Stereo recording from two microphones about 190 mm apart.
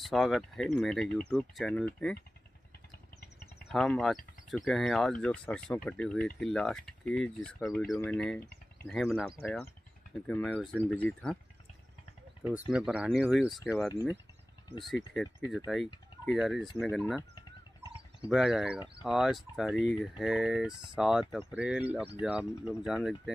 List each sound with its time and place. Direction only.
0.0 s speech: centre (ahead or behind)
3.7 s speech: centre (ahead or behind)
12.6 s speech: 5° right (ahead or behind)
13.8 s speech: 10° right (ahead or behind)
17.4 s a sound: 25° left (ahead or behind)
18.3 s speech: centre (ahead or behind)